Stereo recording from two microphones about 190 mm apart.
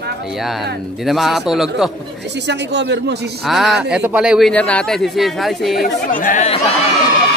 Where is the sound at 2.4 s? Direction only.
65° right (ahead or behind).